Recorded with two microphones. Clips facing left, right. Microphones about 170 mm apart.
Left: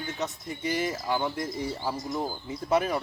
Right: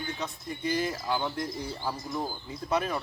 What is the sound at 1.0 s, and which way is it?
Speech, 5° left (ahead or behind).